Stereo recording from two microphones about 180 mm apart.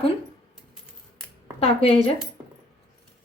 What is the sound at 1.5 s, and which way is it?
Speech, 35° left (ahead or behind).